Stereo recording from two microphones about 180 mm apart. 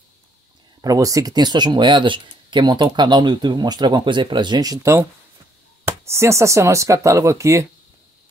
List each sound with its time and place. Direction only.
0.7 s speech: 20° right (ahead or behind)